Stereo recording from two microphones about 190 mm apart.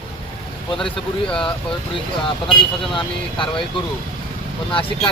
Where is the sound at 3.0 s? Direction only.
25° left (ahead or behind).